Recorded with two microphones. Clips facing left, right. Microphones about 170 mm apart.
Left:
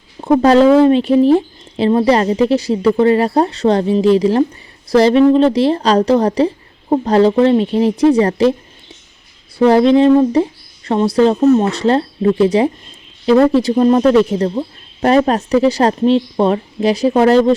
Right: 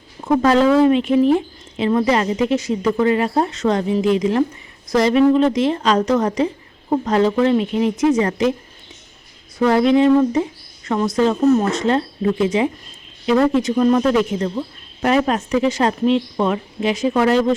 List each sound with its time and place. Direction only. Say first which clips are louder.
0.2 s speech: left 5 dB; 30° left (ahead or behind)
9.6 s speech: left 5 dB; 30° left (ahead or behind)